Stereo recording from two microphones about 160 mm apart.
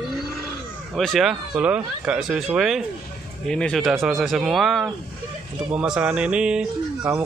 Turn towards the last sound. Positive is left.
turn(degrees=-5)  # may be behind; listen again after turning